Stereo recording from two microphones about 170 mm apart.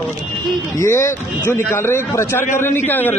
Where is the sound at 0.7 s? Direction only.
15° left (ahead or behind).